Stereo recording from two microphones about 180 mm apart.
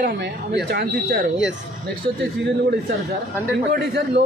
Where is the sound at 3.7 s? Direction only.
70° right (ahead or behind).